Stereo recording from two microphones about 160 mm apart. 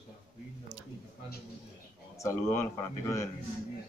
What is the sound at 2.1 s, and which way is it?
Speech, 15° left (ahead or behind).